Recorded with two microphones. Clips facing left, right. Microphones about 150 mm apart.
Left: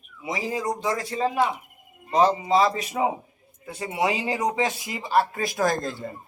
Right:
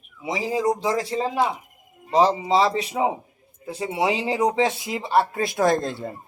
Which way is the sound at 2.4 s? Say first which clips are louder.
Right 1 dB; 25° right (ahead or behind).